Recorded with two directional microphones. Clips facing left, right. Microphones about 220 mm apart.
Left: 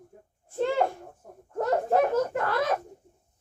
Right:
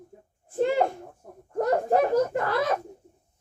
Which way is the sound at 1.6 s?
15° right (ahead or behind).